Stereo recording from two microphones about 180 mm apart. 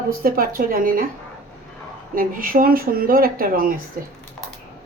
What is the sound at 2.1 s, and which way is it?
Speech, 50° right (ahead or behind).